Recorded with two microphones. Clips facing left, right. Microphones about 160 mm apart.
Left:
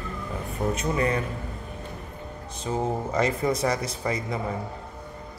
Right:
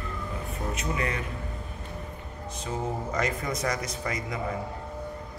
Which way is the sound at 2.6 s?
30° left (ahead or behind).